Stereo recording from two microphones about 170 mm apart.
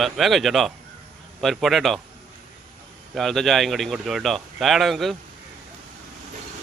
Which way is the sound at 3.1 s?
Centre (ahead or behind).